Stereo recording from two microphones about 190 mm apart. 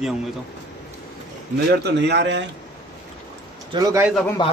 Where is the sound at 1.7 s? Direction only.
60° right (ahead or behind).